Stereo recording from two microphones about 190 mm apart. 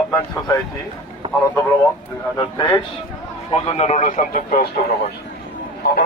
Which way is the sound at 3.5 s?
35° left (ahead or behind).